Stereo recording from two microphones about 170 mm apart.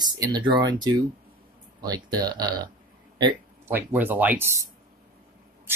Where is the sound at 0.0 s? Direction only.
25° right (ahead or behind).